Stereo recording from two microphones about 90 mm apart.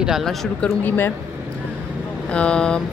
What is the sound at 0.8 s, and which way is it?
Speech, 25° left (ahead or behind).